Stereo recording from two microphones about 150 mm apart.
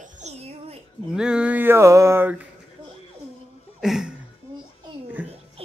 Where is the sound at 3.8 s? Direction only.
5° right (ahead or behind).